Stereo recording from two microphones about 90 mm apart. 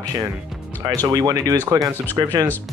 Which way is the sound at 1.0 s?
45° right (ahead or behind).